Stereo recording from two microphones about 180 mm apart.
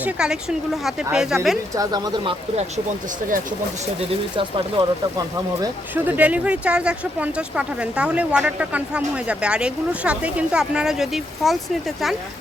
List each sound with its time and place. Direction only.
0.0 s speech: 5° right (ahead or behind)
1.7 s speech: 20° right (ahead or behind)
4.4 s speech: 25° right (ahead or behind)
5.9 s speech: 10° right (ahead or behind)